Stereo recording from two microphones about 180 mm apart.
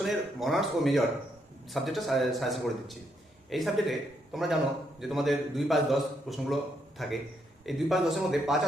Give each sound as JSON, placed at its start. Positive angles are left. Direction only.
{"t": 0.0, "sound": "a man's voice", "side_deg": 0}